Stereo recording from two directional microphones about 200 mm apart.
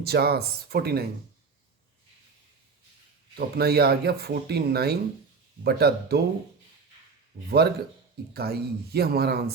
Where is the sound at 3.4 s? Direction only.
50° right (ahead or behind).